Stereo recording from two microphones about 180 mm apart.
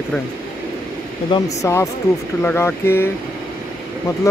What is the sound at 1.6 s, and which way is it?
Speech, 15° left (ahead or behind).